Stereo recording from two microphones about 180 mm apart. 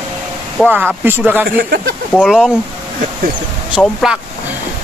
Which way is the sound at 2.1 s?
Centre (ahead or behind).